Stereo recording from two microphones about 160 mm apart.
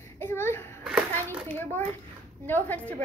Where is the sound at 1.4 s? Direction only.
10° left (ahead or behind).